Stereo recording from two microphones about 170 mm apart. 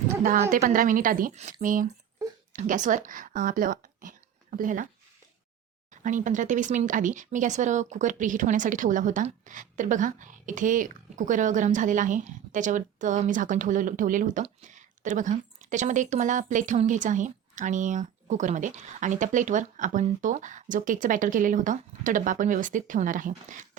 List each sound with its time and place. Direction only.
0.2 s a woman's voice: 55° right (ahead or behind)
5.9 s speech: 50° right (ahead or behind)